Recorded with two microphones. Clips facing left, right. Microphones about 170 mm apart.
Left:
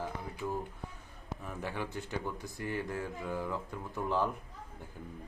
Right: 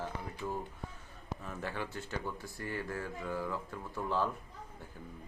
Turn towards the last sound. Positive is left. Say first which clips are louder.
# left 2 dB
turn(degrees=15)  # may be behind; listen again after turning